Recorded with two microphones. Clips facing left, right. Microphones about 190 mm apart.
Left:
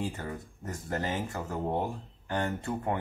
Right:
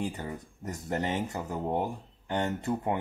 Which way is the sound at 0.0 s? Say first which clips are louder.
Right 1 dB; 15° right (ahead or behind).